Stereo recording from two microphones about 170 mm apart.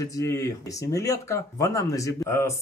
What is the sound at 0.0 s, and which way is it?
Speech, 20° left (ahead or behind).